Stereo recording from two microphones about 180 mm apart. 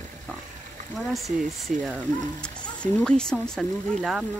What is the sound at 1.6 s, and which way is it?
Speech, 5° left (ahead or behind).